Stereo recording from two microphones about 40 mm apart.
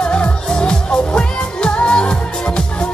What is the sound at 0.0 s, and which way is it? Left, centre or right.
Music, left.